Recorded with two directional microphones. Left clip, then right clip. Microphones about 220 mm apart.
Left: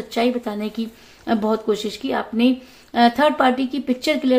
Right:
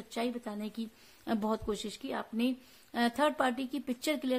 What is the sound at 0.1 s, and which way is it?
Speech, 35° right (ahead or behind).